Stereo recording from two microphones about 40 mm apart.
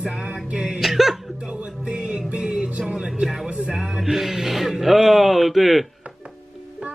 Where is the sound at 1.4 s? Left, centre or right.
Right.